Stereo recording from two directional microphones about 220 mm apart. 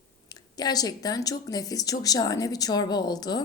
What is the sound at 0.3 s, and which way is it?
Speech, 20° left (ahead or behind).